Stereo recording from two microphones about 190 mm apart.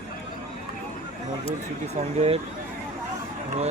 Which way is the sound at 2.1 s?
30° right (ahead or behind).